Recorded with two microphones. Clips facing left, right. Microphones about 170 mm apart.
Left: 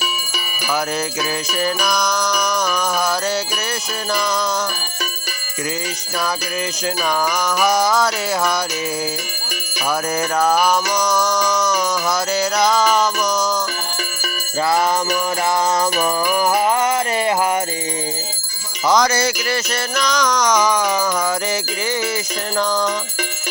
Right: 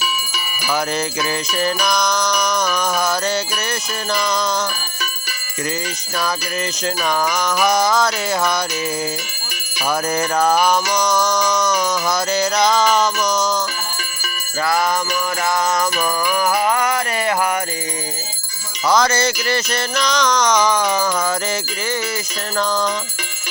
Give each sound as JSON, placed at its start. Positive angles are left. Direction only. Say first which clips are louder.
{"t": 1.6, "sound": "music", "louder": "right 1 dB", "side_deg": 5}
{"t": 7.4, "sound": "music", "louder": "even", "side_deg": 10}
{"t": 10.2, "sound": "music", "louder": "even", "side_deg": 5}
{"t": 16.4, "sound": "music", "louder": "left 1 dB", "side_deg": 25}
{"t": 18.9, "sound": "music", "louder": "even", "side_deg": 15}